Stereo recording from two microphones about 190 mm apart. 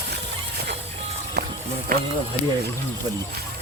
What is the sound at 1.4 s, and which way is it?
Music, 60° right (ahead or behind).